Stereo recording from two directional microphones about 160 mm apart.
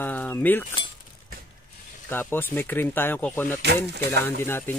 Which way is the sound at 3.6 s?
90° right.